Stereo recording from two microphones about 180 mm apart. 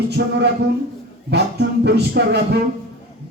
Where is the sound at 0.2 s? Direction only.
75° right (ahead or behind).